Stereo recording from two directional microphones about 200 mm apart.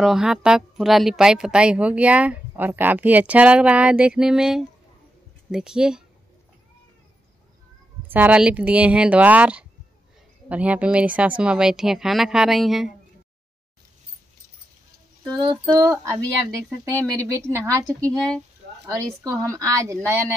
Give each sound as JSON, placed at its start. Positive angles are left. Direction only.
{"t": 0.0, "sound": "a woman's voice", "side_deg": 0}
{"t": 8.1, "sound": "a woman's voice", "side_deg": -10}
{"t": 15.3, "sound": "a sound", "side_deg": -25}
{"t": 15.7, "sound": "speech", "side_deg": -15}
{"t": 17.8, "sound": "a woman's voice", "side_deg": 5}
{"t": 18.9, "sound": "speech", "side_deg": -15}